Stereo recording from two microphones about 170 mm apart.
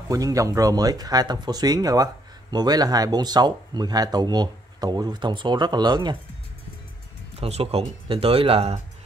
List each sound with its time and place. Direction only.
0.1 s speech: 20° right (ahead or behind)
7.3 s speech: 35° right (ahead or behind)